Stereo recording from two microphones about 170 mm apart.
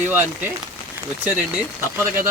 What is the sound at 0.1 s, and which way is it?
Speech, 10° right (ahead or behind).